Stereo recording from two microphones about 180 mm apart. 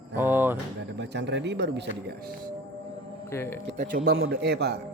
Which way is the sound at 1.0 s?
75° right (ahead or behind).